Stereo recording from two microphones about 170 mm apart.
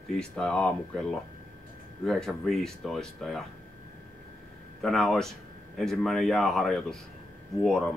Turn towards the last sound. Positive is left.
turn(degrees=0)  # may be behind; listen again after turning